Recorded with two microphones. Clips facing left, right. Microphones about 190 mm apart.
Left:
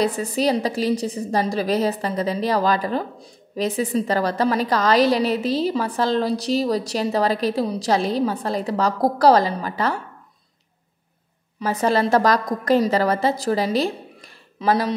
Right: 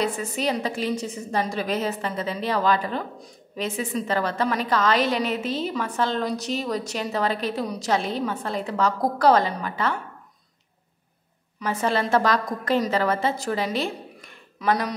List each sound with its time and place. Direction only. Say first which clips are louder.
0.0 s a woman's voice: left 5 dB; 35° left (ahead or behind)
11.6 s a woman's voice: left 4 dB; 40° left (ahead or behind)